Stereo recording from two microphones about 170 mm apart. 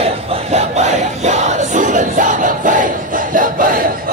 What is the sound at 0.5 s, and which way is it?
Crowd, 40° right (ahead or behind).